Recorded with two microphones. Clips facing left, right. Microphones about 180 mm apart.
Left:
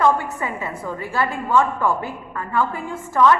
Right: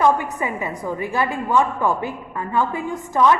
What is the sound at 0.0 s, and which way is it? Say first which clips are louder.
A woman's voice: right 1 dB; 15° right (ahead or behind).